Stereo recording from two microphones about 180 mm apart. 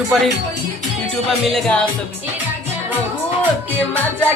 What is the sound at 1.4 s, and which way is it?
Speech, centre (ahead or behind).